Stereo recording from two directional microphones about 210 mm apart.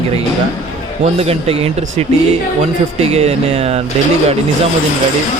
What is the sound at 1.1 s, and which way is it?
Speech, 30° right (ahead or behind).